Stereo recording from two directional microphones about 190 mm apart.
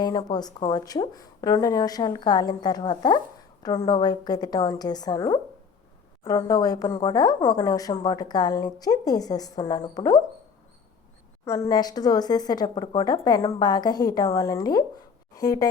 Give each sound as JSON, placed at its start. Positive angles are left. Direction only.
{"t": 0.0, "sound": "speech", "side_deg": 20}
{"t": 11.4, "sound": "speech", "side_deg": 15}